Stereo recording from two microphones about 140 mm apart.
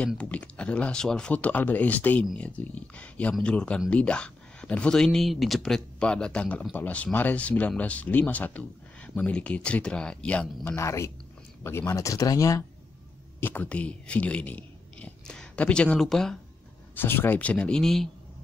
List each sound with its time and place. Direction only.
0.0 s speech: 10° left (ahead or behind)
10.8 s speech: 20° left (ahead or behind)
13.4 s speech: 15° left (ahead or behind)
16.9 s speech: 15° left (ahead or behind)